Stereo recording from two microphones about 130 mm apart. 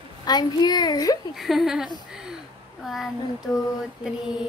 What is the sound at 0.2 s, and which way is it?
Speech, 30° left (ahead or behind).